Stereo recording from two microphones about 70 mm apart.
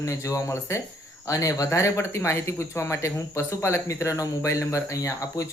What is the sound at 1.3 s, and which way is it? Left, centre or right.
Speech, left.